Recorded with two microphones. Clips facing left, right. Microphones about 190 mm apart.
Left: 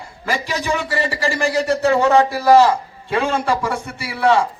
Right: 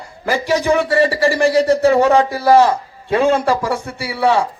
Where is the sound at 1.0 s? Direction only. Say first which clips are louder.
Right 6 dB; 55° right (ahead or behind).